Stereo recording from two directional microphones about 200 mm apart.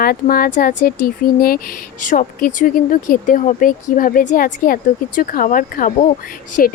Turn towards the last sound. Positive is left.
turn(degrees=45)  # may be behind; listen again after turning